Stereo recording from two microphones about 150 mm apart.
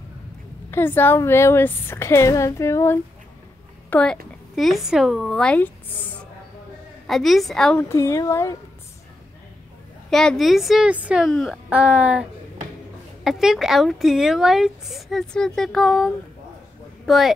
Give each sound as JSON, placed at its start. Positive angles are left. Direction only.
{"t": 0.7, "sound": "a woman's voice", "side_deg": 15}
{"t": 3.9, "sound": "a woman's voice", "side_deg": 5}
{"t": 7.1, "sound": "speech", "side_deg": 0}
{"t": 7.9, "sound": "speech", "side_deg": 20}
{"t": 10.0, "sound": "speech", "side_deg": 5}